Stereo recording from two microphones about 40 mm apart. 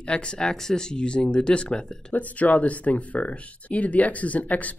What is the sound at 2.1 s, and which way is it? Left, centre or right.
Speech, left.